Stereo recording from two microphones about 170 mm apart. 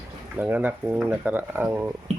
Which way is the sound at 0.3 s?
10° right (ahead or behind).